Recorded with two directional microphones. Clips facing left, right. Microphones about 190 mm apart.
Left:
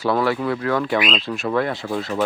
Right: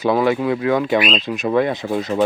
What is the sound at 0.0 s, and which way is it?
Speech, 20° right (ahead or behind).